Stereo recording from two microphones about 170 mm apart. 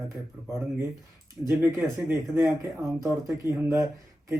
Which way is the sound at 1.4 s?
15° right (ahead or behind).